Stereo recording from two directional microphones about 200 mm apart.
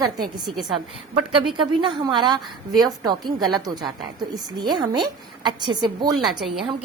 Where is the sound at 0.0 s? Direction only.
20° right (ahead or behind).